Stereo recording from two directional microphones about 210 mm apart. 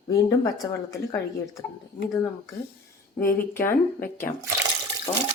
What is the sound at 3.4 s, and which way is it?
Speech, 10° left (ahead or behind).